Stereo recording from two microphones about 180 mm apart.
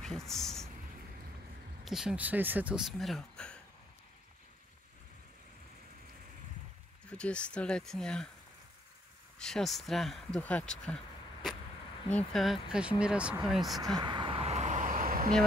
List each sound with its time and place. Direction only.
0.0 s a sound: 5° left (ahead or behind)
1.9 s speech: centre (ahead or behind)
7.1 s speech: 5° left (ahead or behind)
9.4 s speech: centre (ahead or behind)
12.1 s speech: 5° left (ahead or behind)
13.9 s a sound: 25° right (ahead or behind); by 15.3 s 50° right (ahead or behind)